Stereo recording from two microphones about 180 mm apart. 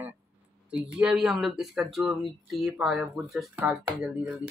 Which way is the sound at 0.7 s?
5° right (ahead or behind).